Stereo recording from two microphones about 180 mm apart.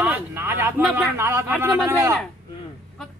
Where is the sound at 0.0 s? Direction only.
10° right (ahead or behind).